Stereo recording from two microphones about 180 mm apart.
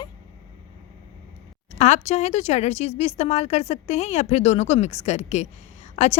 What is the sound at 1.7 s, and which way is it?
Speech, 40° left (ahead or behind).